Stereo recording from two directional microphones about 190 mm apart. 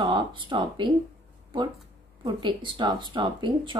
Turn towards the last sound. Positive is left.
turn(degrees=-25)  # may be behind; listen again after turning